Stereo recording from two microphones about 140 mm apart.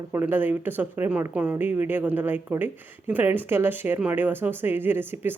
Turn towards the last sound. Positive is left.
turn(degrees=-15)  # may be behind; listen again after turning